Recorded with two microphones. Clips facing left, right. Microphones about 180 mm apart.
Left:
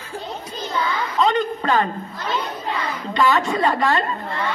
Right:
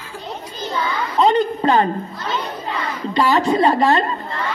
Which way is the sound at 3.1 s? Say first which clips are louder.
Right 3 dB; 35° right (ahead or behind).